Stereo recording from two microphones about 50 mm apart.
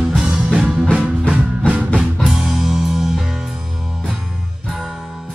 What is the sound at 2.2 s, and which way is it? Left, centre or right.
Music, centre.